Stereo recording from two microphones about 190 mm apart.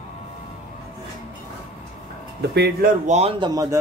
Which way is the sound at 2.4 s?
60° right (ahead or behind).